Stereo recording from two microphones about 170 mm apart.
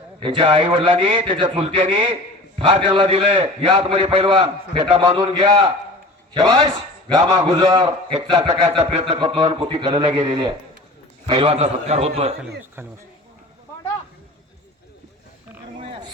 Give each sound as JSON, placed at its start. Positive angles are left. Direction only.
{"t": 0.2, "sound": "a man's voice", "side_deg": -30}